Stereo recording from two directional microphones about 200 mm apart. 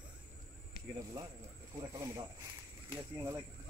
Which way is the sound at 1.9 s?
15° right (ahead or behind).